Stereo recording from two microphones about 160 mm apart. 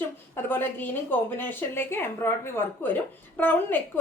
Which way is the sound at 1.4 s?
10° left (ahead or behind).